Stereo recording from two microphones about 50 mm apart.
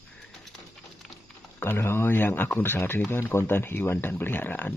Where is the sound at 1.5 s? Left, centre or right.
Left.